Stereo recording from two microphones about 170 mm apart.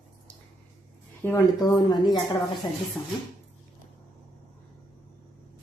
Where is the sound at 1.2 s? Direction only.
10° left (ahead or behind).